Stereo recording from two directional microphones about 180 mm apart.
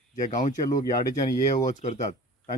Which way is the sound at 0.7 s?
20° left (ahead or behind).